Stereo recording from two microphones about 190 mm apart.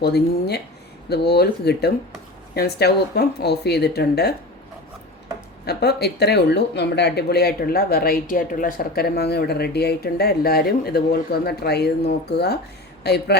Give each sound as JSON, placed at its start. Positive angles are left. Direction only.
{"t": 0.0, "sound": "speech", "side_deg": 60}
{"t": 5.6, "sound": "speech", "side_deg": 60}